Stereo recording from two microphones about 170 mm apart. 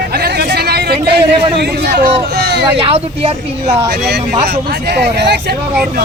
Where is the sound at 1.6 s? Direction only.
70° right (ahead or behind).